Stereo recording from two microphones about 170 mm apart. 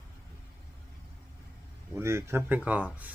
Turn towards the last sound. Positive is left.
turn(degrees=-10)  # may be behind; listen again after turning